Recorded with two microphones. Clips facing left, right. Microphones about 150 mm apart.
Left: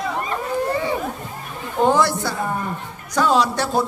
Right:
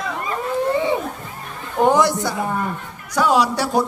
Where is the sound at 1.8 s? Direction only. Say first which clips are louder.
Right 2 dB; 15° right (ahead or behind).